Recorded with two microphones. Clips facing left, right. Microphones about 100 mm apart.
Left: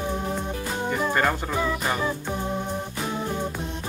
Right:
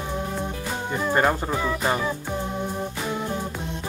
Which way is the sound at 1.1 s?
25° right (ahead or behind).